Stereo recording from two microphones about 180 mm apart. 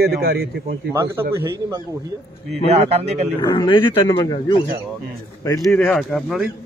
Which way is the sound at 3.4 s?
25° left (ahead or behind).